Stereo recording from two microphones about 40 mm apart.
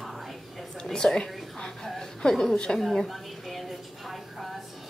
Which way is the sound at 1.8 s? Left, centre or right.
Centre.